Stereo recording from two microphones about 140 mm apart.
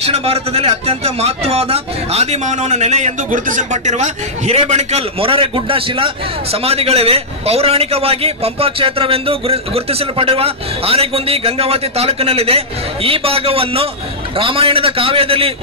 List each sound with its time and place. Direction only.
0.0 s a man's voice: 45° right (ahead or behind)
5.2 s a man's voice: 40° right (ahead or behind)